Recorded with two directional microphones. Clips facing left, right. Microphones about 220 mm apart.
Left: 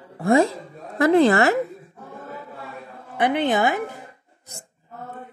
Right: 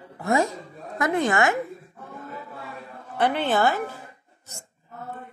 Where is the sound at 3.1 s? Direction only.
15° left (ahead or behind).